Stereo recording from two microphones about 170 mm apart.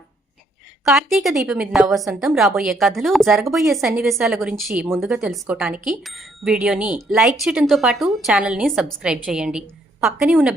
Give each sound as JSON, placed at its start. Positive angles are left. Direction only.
{"t": 0.9, "sound": "a woman's voice", "side_deg": 0}